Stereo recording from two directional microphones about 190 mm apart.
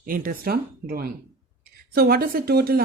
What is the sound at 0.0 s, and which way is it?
Speech, 45° right (ahead or behind).